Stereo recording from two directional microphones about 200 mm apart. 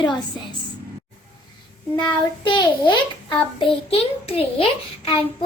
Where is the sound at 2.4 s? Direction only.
20° left (ahead or behind).